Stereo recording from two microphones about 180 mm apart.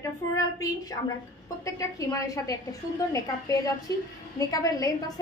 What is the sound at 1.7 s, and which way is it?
A woman's voice, 15° left (ahead or behind).